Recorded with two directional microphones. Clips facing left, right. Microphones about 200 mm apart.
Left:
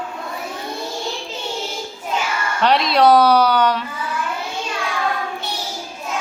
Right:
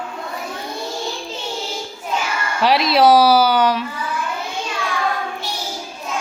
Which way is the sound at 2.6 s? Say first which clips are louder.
Right 1 dB; 5° right (ahead or behind).